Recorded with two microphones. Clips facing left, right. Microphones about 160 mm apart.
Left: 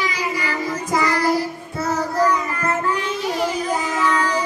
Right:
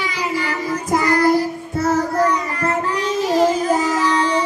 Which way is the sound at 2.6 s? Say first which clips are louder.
Right 4 dB; 35° right (ahead or behind).